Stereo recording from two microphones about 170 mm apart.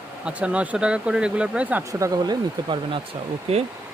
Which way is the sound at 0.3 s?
5° right (ahead or behind).